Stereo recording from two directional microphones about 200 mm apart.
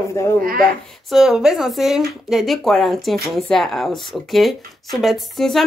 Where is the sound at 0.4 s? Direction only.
45° right (ahead or behind).